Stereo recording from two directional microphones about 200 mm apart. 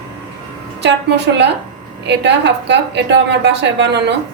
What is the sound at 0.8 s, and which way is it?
A woman's voice, 60° right (ahead or behind).